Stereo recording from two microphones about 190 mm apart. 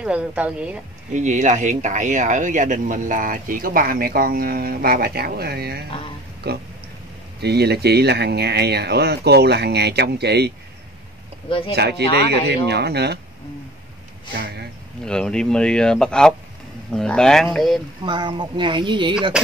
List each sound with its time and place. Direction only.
0.0 s a woman's voice: 5° right (ahead or behind)
1.1 s speech: 40° right (ahead or behind); by 5.9 s 55° right (ahead or behind)
5.9 s speech: 30° left (ahead or behind)
6.4 s speech: 55° right (ahead or behind)
11.4 s speech: 25° left (ahead or behind)
11.7 s speech: 60° right (ahead or behind)
14.3 s speech: 65° right (ahead or behind)
15.0 s speech: 5° left (ahead or behind)
18.0 s speech: 25° right (ahead or behind)
19.4 s speech: 5° right (ahead or behind)